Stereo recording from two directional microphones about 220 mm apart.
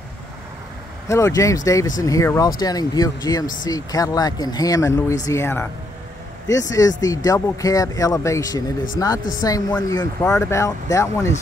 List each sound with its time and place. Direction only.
1.0 s speech: 15° left (ahead or behind)